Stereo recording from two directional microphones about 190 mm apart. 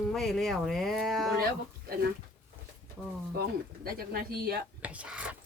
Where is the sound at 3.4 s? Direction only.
50° right (ahead or behind).